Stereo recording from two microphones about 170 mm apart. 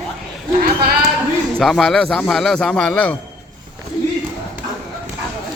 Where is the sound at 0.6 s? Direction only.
65° right (ahead or behind).